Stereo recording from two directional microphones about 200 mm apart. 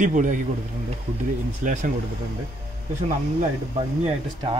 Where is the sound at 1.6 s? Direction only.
40° right (ahead or behind).